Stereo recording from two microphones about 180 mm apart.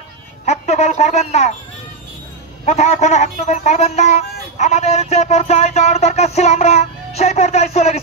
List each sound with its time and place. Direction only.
0.5 s speech: 35° left (ahead or behind)
2.6 s speech: 35° left (ahead or behind)